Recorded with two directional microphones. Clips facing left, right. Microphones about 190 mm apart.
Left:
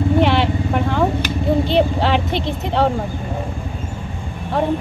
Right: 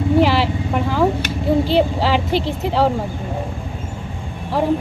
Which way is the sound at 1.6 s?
5° right (ahead or behind).